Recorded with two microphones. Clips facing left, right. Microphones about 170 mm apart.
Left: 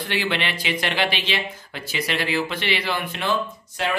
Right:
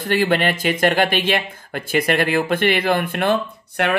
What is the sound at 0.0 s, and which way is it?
Speech, 45° right (ahead or behind).